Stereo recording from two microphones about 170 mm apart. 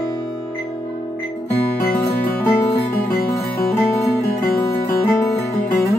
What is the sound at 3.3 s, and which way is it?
Music, 15° left (ahead or behind).